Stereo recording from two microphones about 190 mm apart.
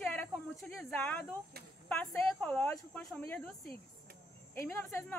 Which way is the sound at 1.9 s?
5° left (ahead or behind).